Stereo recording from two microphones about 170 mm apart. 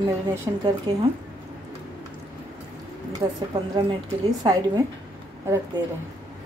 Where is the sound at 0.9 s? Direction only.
30° right (ahead or behind).